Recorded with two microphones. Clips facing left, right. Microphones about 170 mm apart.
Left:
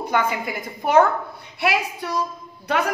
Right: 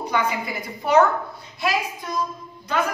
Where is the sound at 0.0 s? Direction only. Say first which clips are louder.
Left 1 dB; 50° left (ahead or behind).